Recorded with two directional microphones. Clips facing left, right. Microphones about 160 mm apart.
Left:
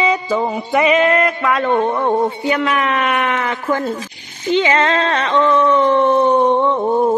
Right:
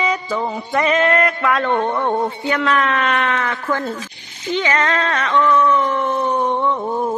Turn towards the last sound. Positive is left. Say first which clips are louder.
# left 5 dB
turn(degrees=35)  # may be behind; listen again after turning